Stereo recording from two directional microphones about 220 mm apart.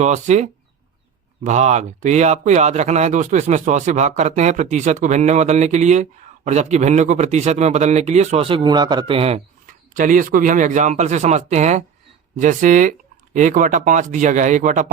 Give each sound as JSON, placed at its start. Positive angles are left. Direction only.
{"t": 0.0, "sound": "speech", "side_deg": -30}
{"t": 9.9, "sound": "speech", "side_deg": -35}